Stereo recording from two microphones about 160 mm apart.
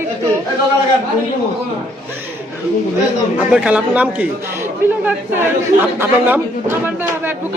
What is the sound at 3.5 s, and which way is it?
Speech, 10° right (ahead or behind).